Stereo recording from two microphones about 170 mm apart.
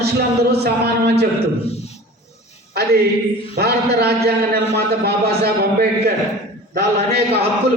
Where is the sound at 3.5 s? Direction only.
70° right (ahead or behind).